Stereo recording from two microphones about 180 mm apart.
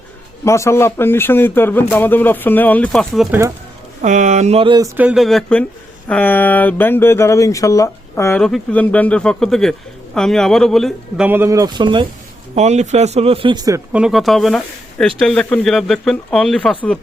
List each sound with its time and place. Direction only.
0.4 s speech: 15° left (ahead or behind)
4.0 s speech: 40° right (ahead or behind); by 4.9 s 25° right (ahead or behind)
4.9 s speech: 5° right (ahead or behind)
11.3 s speech: 15° right (ahead or behind)
12.5 s speech: 40° right (ahead or behind); by 13.8 s 20° right (ahead or behind)
13.9 s speech: centre (ahead or behind)